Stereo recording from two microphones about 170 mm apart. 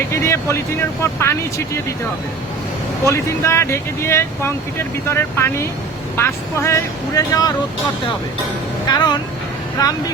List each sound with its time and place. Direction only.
0.1 s speech: 15° left (ahead or behind)
3.1 s speech: 15° left (ahead or behind)
8.9 s speech: 25° left (ahead or behind)